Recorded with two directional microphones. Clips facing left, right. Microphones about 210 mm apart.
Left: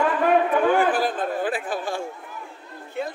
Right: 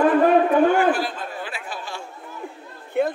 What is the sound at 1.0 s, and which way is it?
Speech, 50° left (ahead or behind).